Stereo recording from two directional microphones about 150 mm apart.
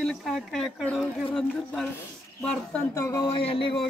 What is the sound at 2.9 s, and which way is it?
Speech, 20° left (ahead or behind).